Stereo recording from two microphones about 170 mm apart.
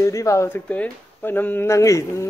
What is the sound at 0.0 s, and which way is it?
Speech, 20° left (ahead or behind).